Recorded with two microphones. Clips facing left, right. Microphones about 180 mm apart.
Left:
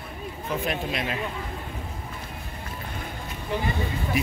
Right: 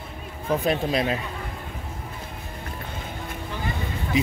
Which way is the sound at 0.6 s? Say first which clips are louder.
Right 7 dB; 35° right (ahead or behind).